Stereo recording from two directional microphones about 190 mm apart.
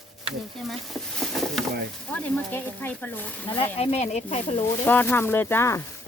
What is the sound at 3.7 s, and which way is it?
Speech, 35° left (ahead or behind).